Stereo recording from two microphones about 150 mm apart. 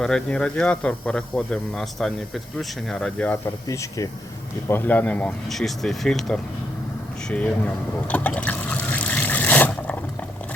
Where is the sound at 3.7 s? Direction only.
20° left (ahead or behind).